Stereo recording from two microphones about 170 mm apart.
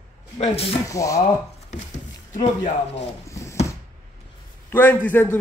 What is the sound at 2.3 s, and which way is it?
Speech, 45° left (ahead or behind).